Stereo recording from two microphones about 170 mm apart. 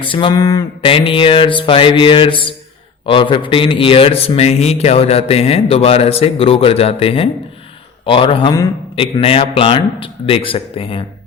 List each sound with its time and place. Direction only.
0.0 s a man's voice: 30° left (ahead or behind)